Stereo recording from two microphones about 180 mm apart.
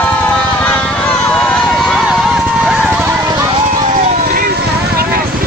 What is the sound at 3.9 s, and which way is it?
Vehicle, 50° right (ahead or behind).